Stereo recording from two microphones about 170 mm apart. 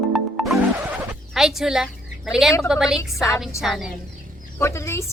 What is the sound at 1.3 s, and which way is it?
Speech, 5° right (ahead or behind).